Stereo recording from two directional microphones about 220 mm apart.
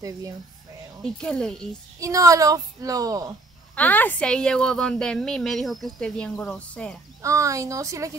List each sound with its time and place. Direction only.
1.0 s a woman's voice: 5° left (ahead or behind)
2.0 s a woman's voice: 15° right (ahead or behind)
3.7 s a woman's voice: 5° left (ahead or behind)
7.2 s a woman's voice: 15° right (ahead or behind)